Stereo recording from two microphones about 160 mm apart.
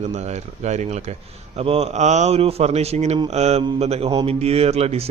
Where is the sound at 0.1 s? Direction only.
45° right (ahead or behind).